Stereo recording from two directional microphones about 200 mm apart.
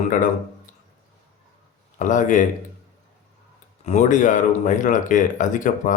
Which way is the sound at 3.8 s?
35° left (ahead or behind).